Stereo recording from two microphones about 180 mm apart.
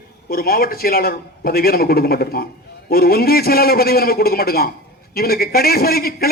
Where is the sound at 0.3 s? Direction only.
55° left (ahead or behind).